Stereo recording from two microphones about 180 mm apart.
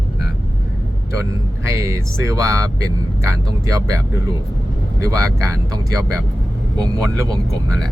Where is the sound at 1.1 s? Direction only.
15° right (ahead or behind).